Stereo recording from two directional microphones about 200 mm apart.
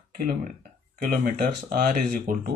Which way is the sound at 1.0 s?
45° right (ahead or behind).